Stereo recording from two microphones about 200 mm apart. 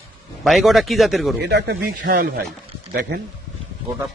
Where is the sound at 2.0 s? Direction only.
45° right (ahead or behind).